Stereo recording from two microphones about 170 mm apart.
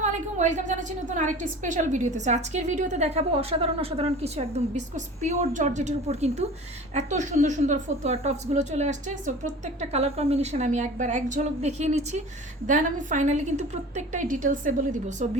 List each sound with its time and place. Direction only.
0.0 s a woman's voice: 45° right (ahead or behind)